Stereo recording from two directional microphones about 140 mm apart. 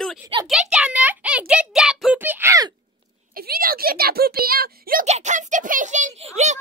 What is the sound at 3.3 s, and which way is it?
A woman's voice, 90° right.